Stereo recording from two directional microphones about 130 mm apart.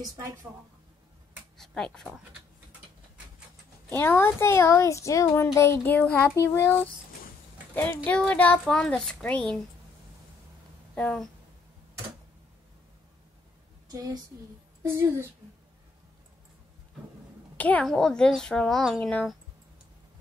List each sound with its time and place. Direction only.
0.0 s a woman's voice: 25° right (ahead or behind)
1.6 s speech: 5° left (ahead or behind)
3.9 s speech: 20° left (ahead or behind)
11.0 s speech: 10° left (ahead or behind)
14.8 s a woman's voice: 20° right (ahead or behind)
17.6 s a child's voice: 10° left (ahead or behind)